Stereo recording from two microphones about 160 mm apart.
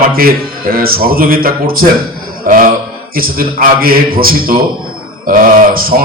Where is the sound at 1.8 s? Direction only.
55° right (ahead or behind).